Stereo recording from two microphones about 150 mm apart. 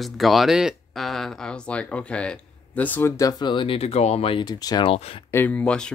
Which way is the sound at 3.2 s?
25° left (ahead or behind).